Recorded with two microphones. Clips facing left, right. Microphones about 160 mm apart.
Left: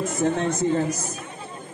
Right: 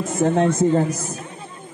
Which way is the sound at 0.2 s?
50° right (ahead or behind).